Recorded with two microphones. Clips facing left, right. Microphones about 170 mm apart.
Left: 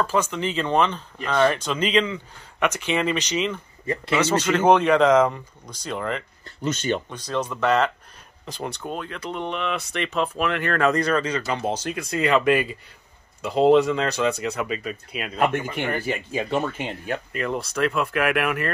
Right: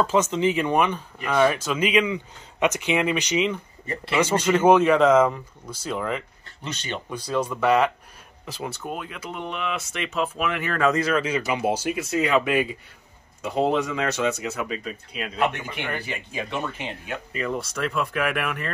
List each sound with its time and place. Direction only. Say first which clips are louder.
0.0 s speech: right 3 dB; 20° right (ahead or behind); by 6.2 s 5° right (ahead or behind)
6.6 s speech: left 8 dB; 45° left (ahead or behind)
7.1 s speech: right 1 dB; 10° right (ahead or behind)
14.0 s speech: left 1 dB; centre (ahead or behind)
14.9 s speech: left 2 dB; 50° left (ahead or behind)
17.4 s speech: left 2 dB; centre (ahead or behind)